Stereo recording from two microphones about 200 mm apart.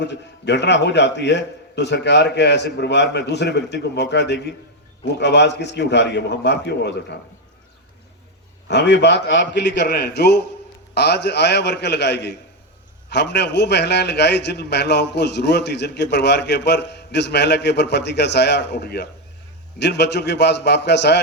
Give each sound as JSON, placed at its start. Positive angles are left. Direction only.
{"t": 0.0, "sound": "a man's voice", "side_deg": 60}
{"t": 8.6, "sound": "a man's voice", "side_deg": 60}